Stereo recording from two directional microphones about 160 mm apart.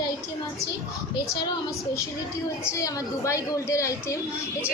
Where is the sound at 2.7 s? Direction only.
20° left (ahead or behind).